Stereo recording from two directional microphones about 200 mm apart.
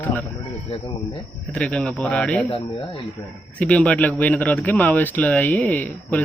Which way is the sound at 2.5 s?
25° left (ahead or behind).